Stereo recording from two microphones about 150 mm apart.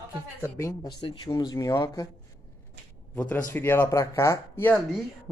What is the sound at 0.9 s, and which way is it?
Speech, 30° left (ahead or behind).